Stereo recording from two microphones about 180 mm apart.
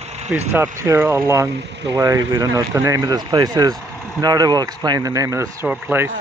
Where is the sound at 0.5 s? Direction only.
15° right (ahead or behind).